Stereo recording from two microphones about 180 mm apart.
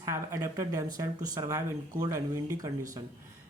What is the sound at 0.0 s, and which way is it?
Speech, 15° right (ahead or behind).